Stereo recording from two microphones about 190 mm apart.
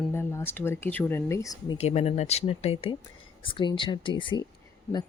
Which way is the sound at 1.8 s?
35° left (ahead or behind).